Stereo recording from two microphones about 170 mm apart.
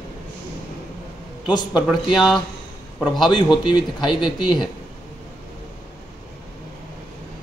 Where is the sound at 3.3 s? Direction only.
25° left (ahead or behind).